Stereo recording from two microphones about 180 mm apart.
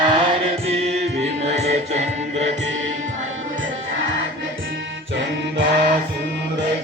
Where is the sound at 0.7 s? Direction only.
35° right (ahead or behind).